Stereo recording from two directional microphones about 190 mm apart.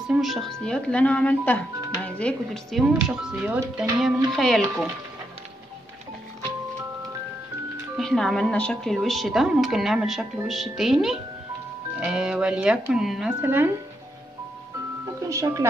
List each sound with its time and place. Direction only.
0.1 s speech: centre (ahead or behind)
8.0 s speech: centre (ahead or behind)
15.2 s speech: 15° right (ahead or behind)